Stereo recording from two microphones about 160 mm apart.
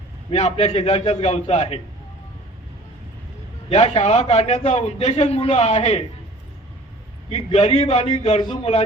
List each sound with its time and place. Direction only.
0.3 s a man's voice: 40° left (ahead or behind)
3.7 s a man's voice: 40° left (ahead or behind)
7.3 s a man's voice: 35° left (ahead or behind)